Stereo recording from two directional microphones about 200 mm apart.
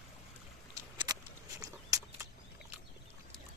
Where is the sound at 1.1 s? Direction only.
20° right (ahead or behind).